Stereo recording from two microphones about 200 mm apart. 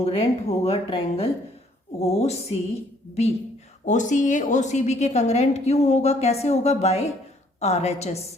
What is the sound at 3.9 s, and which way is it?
A woman's voice, 40° left (ahead or behind).